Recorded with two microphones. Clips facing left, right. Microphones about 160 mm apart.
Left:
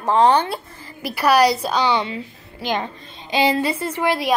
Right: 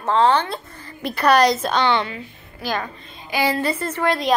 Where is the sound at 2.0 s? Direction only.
20° left (ahead or behind).